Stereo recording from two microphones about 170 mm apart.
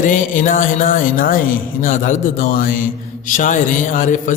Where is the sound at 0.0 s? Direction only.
50° left (ahead or behind).